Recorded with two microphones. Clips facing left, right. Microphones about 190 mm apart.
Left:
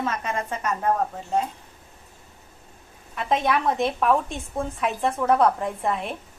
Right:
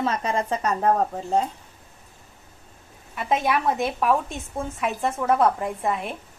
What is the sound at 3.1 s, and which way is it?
A woman's voice, 5° right (ahead or behind).